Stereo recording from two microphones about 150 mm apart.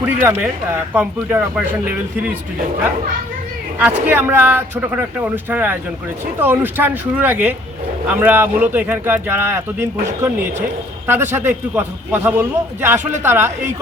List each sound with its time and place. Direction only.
0.0 s speech: 10° right (ahead or behind)
3.8 s speech: 10° right (ahead or behind)